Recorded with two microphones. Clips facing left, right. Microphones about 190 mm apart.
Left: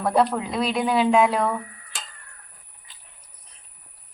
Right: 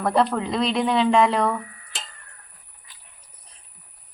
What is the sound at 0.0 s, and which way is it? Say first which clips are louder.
Speech: even; 5° left (ahead or behind).